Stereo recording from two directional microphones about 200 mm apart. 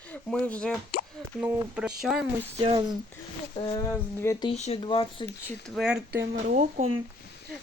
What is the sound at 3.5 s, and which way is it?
Speech, 25° left (ahead or behind).